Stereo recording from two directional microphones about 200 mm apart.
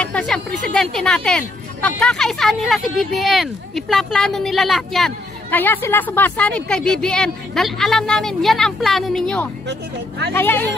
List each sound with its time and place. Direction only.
0.0 s a sound: 5° left (ahead or behind)
0.7 s speech: 5° left (ahead or behind)
9.7 s speech: 55° right (ahead or behind)
10.3 s speech: 10° left (ahead or behind)